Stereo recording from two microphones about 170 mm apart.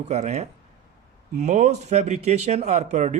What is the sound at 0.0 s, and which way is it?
Speech, 40° right (ahead or behind).